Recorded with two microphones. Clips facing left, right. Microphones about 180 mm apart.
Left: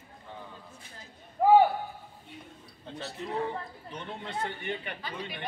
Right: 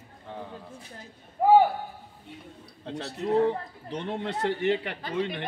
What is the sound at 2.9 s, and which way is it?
Speech, 70° right (ahead or behind).